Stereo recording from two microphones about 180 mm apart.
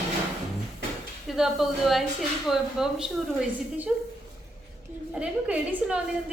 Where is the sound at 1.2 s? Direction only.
Centre (ahead or behind).